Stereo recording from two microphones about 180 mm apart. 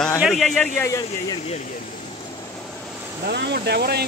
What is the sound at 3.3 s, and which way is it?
Speech, 70° right (ahead or behind).